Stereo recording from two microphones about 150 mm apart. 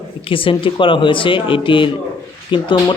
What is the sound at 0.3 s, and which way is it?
Speech, 35° left (ahead or behind).